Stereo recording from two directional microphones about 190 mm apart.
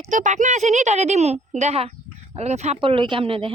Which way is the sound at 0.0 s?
40° right (ahead or behind).